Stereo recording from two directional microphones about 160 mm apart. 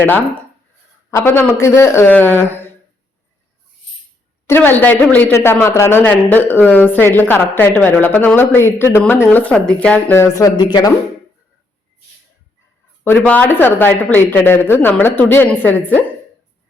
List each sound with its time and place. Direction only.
1.1 s speech: 15° left (ahead or behind)
4.4 s speech: 15° left (ahead or behind)
13.1 s speech: 10° left (ahead or behind)